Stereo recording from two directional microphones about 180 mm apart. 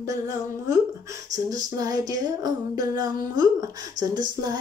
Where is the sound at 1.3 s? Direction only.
20° right (ahead or behind).